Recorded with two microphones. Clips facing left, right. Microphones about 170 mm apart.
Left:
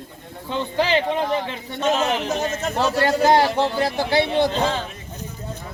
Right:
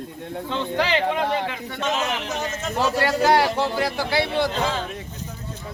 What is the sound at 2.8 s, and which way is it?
Speech, 20° left (ahead or behind).